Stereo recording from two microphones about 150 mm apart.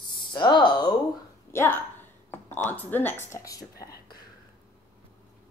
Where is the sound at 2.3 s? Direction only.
15° left (ahead or behind).